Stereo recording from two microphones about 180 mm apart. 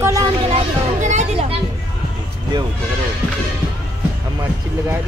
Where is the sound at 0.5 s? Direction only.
40° right (ahead or behind).